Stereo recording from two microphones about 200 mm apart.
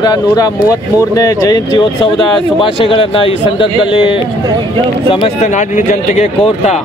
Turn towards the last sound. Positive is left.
turn(degrees=40)  # may be behind; listen again after turning